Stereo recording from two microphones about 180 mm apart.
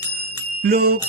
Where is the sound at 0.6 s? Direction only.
60° right (ahead or behind).